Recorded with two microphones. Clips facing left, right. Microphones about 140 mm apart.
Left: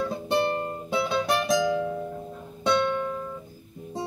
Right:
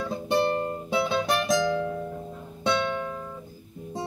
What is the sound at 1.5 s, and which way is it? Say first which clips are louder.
Music: left 1 dB; 15° left (ahead or behind).